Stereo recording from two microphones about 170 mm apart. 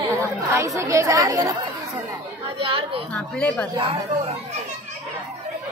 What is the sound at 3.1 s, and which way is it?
Speech, 5° left (ahead or behind).